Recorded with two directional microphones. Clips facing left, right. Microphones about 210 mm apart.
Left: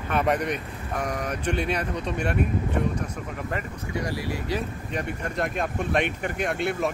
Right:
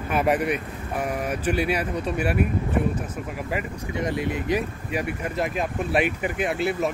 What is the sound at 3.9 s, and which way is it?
Speech, 20° right (ahead or behind).